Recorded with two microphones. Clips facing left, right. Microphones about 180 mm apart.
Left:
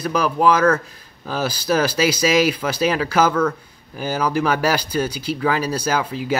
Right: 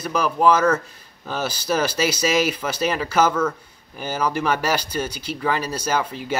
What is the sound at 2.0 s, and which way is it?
Speech, 10° left (ahead or behind).